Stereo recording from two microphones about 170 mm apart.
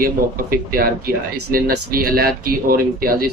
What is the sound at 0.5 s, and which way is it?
Speech, 60° right (ahead or behind).